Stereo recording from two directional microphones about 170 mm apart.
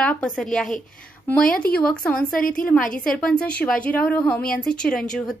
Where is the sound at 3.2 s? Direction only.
5° left (ahead or behind).